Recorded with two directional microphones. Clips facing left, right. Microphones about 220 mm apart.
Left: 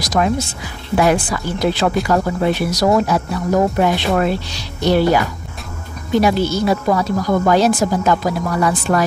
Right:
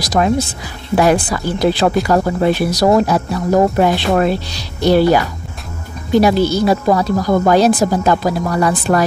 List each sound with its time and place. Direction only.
0.0 s a woman's voice: 35° right (ahead or behind)